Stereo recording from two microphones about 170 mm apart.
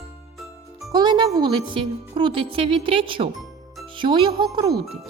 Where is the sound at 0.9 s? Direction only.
25° right (ahead or behind).